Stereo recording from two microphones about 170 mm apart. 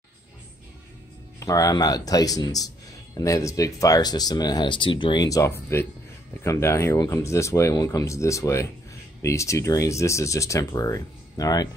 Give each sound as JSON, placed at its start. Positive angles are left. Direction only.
{"t": 1.4, "sound": "speech", "side_deg": 20}